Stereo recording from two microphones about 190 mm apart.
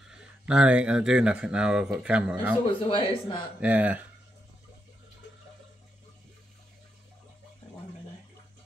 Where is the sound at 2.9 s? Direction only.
25° left (ahead or behind).